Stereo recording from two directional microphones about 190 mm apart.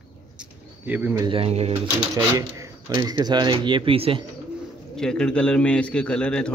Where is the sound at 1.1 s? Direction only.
25° right (ahead or behind).